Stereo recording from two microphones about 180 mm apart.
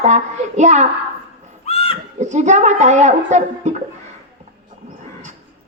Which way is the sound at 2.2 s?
40° right (ahead or behind).